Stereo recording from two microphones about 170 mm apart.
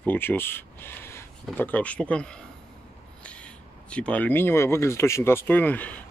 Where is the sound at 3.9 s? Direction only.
5° left (ahead or behind).